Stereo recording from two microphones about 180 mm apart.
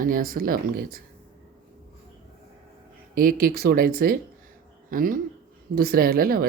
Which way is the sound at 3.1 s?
50° right (ahead or behind).